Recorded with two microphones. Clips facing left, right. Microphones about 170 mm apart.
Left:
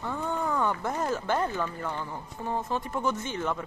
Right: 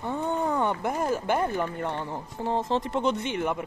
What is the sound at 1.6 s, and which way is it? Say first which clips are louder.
Speech: right 3 dB; 25° right (ahead or behind).